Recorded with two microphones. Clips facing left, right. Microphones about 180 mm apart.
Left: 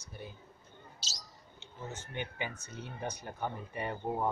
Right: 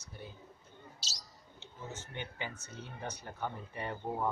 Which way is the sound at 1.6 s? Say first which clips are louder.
Left 2 dB; 15° left (ahead or behind).